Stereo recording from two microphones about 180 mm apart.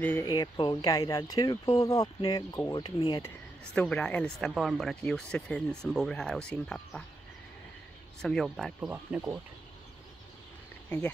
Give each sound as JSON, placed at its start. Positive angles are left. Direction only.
{"t": 0.0, "sound": "speech", "side_deg": 15}
{"t": 3.2, "sound": "speech", "side_deg": 10}
{"t": 8.2, "sound": "speech", "side_deg": 5}